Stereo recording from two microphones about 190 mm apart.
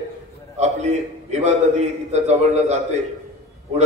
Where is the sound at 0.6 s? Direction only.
35° right (ahead or behind).